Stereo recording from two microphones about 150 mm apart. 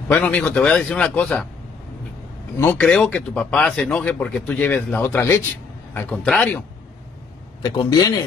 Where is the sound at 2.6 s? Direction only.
15° left (ahead or behind).